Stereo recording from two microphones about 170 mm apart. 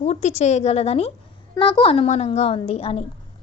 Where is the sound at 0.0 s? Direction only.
40° left (ahead or behind).